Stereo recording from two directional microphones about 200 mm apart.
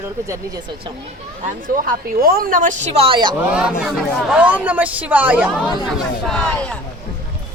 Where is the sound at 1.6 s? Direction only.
45° right (ahead or behind); by 3.3 s 25° right (ahead or behind).